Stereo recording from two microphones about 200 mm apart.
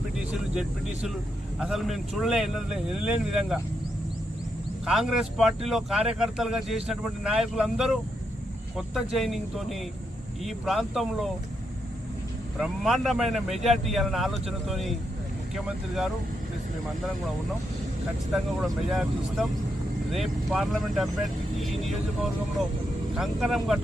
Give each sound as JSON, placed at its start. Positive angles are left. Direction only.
{"t": 1.5, "sound": "speech", "side_deg": 0}
{"t": 4.9, "sound": "speech", "side_deg": 0}
{"t": 12.5, "sound": "speech", "side_deg": 0}
{"t": 18.3, "sound": "speech", "side_deg": 0}
{"t": 20.1, "sound": "speech", "side_deg": 0}